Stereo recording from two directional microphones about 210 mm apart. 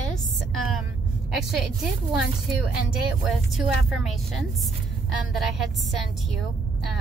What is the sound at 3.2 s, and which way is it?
A woman's voice, centre (ahead or behind).